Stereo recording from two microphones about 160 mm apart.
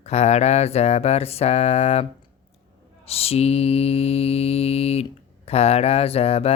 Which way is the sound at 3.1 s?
40° left (ahead or behind).